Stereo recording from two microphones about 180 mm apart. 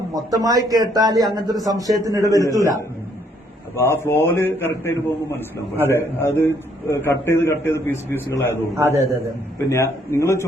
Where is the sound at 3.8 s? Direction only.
15° left (ahead or behind).